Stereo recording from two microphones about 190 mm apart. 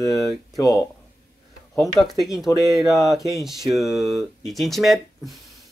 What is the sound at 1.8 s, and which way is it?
Speech, centre (ahead or behind).